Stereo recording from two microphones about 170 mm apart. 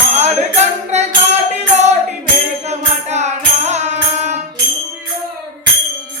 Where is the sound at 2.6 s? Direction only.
40° right (ahead or behind).